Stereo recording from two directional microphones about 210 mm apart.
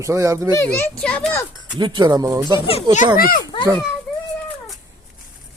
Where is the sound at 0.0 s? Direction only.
15° right (ahead or behind).